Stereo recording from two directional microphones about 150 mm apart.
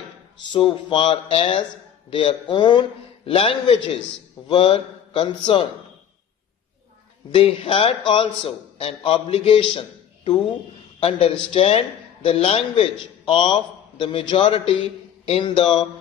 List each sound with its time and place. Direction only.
0.5 s a man's voice: 35° left (ahead or behind)
7.2 s a man's voice: 35° left (ahead or behind)